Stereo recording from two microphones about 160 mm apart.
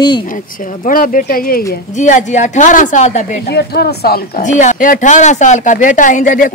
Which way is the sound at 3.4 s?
85° left.